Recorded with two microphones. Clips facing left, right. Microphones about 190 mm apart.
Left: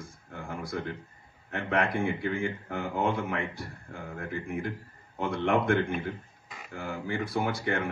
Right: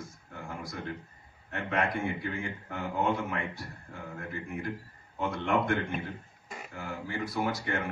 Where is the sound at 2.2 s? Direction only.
55° left (ahead or behind).